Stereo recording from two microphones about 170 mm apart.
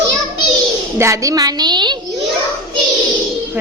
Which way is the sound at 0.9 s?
15° right (ahead or behind).